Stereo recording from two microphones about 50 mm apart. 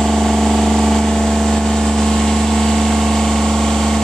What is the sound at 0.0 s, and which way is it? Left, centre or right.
Vehicle, centre.